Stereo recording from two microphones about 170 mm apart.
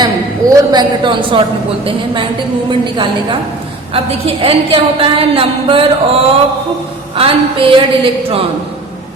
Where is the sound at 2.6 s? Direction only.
30° right (ahead or behind).